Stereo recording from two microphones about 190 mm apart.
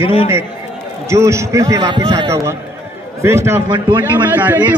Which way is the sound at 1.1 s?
15° right (ahead or behind).